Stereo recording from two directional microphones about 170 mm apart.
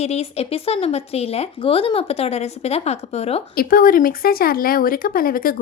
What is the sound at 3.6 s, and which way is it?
Speech, 55° left (ahead or behind).